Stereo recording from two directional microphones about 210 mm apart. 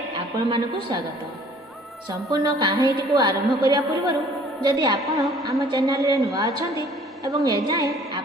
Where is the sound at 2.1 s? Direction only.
20° right (ahead or behind).